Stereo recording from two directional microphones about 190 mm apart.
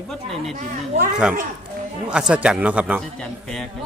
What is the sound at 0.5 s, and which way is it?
Speech, 45° right (ahead or behind).